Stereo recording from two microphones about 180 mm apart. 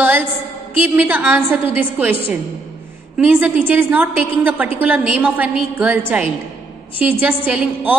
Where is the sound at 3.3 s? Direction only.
10° right (ahead or behind).